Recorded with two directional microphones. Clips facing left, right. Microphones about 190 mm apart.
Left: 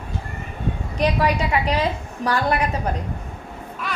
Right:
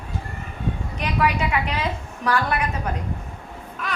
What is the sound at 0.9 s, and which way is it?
Speech, 35° left (ahead or behind).